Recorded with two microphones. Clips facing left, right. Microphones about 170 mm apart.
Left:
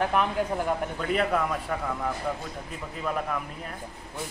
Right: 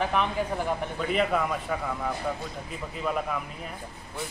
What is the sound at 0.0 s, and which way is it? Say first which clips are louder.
Speech: left 1 dB; 5° left (ahead or behind).